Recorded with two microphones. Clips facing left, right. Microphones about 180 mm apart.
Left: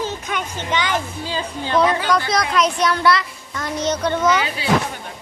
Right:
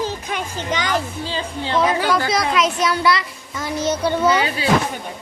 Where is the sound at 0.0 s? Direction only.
35° right (ahead or behind).